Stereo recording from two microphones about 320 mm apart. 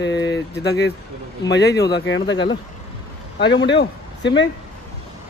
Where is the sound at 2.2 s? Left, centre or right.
Centre.